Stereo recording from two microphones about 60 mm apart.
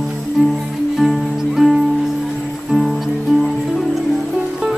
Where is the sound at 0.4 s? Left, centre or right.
Right.